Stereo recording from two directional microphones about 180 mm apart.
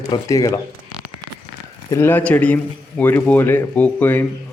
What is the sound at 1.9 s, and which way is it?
A man's voice, 10° left (ahead or behind).